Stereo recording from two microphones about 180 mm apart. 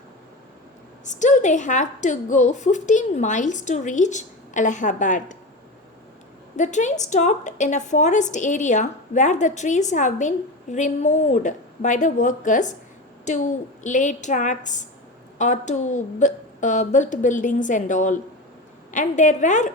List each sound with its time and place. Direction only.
1.0 s a woman's voice: 45° left (ahead or behind)
6.6 s a woman's voice: 40° left (ahead or behind)